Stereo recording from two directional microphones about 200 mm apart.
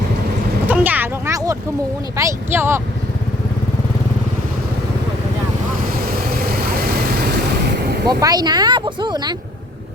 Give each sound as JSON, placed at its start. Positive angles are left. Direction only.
{"t": 0.7, "sound": "a sound", "side_deg": -10}
{"t": 2.1, "sound": "speech", "side_deg": -15}
{"t": 6.1, "sound": "vehicle", "side_deg": -50}
{"t": 8.0, "sound": "speech", "side_deg": -20}